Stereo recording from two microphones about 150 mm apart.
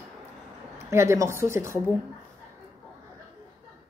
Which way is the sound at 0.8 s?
20° right (ahead or behind).